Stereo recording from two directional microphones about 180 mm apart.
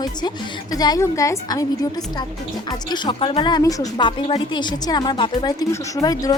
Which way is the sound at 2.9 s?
25° left (ahead or behind).